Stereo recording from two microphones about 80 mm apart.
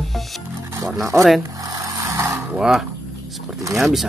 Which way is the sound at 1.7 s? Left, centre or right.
Right.